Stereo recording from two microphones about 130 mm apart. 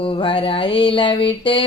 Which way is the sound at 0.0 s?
45° left (ahead or behind).